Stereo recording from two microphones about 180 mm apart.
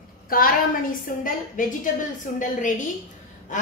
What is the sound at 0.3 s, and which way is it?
A woman's voice, 50° left (ahead or behind).